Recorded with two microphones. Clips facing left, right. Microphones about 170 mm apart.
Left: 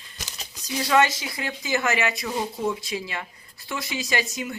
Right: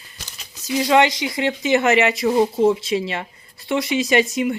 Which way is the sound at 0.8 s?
20° right (ahead or behind).